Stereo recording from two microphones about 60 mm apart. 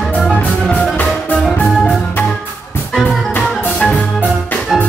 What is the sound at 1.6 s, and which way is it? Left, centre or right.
Music, left.